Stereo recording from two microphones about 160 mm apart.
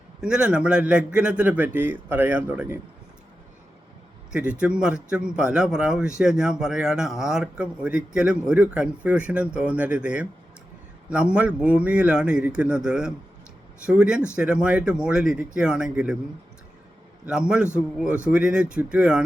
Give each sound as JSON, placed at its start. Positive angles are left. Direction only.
{"t": 0.2, "sound": "a man's voice", "side_deg": -5}
{"t": 4.3, "sound": "a man's voice", "side_deg": -10}
{"t": 17.2, "sound": "a man's voice", "side_deg": -5}